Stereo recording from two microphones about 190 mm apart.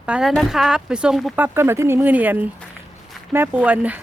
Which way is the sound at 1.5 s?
15° right (ahead or behind).